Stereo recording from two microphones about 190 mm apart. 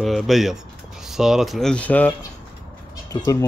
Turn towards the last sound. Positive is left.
turn(degrees=15)  # may be behind; listen again after turning